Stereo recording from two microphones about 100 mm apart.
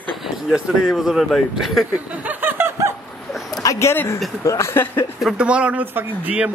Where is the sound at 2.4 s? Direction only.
20° right (ahead or behind).